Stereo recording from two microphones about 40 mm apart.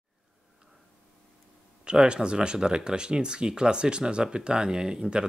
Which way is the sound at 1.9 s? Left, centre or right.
Right.